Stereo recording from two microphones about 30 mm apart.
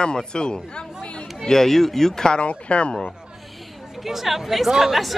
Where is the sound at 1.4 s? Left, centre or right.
Centre.